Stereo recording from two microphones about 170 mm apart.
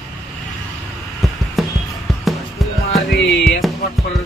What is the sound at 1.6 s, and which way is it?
Music, centre (ahead or behind).